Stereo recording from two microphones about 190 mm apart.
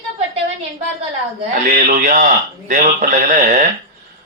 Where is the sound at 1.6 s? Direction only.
45° right (ahead or behind).